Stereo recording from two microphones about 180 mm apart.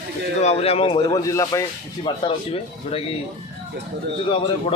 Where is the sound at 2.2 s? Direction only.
30° left (ahead or behind).